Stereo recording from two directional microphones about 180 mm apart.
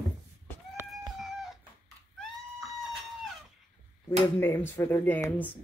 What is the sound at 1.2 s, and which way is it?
Cat, centre (ahead or behind).